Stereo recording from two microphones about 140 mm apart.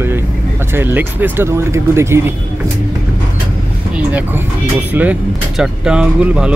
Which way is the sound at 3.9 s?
10° right (ahead or behind).